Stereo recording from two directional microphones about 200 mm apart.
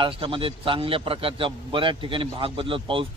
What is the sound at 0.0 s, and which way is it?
A man's voice, 25° right (ahead or behind).